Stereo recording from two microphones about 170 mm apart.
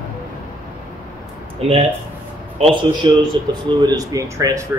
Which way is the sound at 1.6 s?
35° right (ahead or behind).